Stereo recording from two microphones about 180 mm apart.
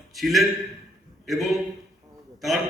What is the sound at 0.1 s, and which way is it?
A man's voice, centre (ahead or behind).